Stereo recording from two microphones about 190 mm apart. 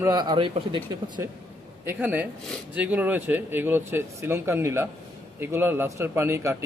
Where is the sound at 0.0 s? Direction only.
20° right (ahead or behind).